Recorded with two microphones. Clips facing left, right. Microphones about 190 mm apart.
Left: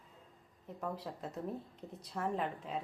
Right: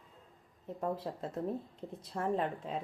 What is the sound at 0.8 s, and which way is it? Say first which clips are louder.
Speech: right 5 dB; 30° right (ahead or behind).